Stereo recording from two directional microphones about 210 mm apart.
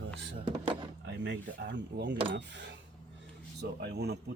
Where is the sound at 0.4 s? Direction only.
25° right (ahead or behind).